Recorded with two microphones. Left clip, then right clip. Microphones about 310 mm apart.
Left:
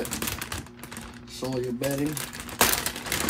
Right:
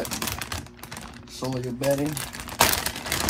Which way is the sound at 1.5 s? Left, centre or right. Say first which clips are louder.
Right 4 dB; right.